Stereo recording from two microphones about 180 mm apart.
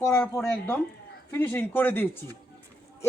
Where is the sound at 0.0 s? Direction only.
15° left (ahead or behind).